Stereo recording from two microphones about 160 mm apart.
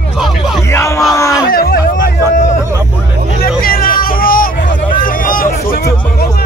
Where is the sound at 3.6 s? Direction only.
65° left (ahead or behind).